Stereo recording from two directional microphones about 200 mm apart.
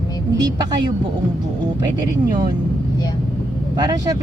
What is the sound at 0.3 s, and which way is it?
Speech, 20° right (ahead or behind).